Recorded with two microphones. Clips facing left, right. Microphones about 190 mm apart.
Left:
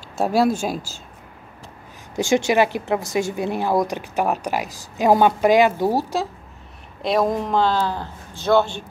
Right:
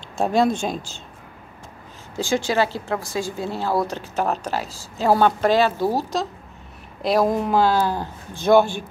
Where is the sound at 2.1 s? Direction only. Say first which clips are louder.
Left 3 dB; 20° left (ahead or behind).